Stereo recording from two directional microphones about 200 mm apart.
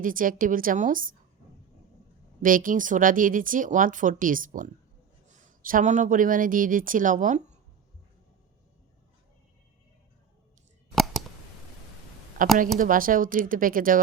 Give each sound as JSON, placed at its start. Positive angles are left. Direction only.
{"t": 0.0, "sound": "speech", "side_deg": -45}
{"t": 2.4, "sound": "speech", "side_deg": -45}
{"t": 10.9, "sound": "scissors", "side_deg": 0}
{"t": 12.4, "sound": "speech", "side_deg": -45}